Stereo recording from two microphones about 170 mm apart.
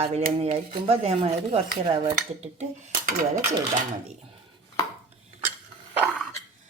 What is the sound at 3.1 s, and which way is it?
Speech, 55° right (ahead or behind).